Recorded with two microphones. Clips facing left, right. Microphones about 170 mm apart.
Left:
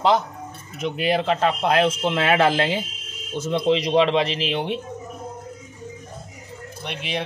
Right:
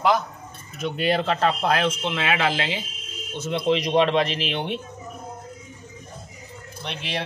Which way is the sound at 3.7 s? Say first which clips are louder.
Left 1 dB; 30° left (ahead or behind).